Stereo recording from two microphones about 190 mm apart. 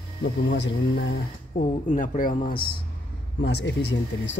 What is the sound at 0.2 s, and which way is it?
Speech, 65° left (ahead or behind).